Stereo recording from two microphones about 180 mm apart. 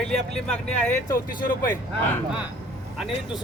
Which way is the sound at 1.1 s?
50° left (ahead or behind).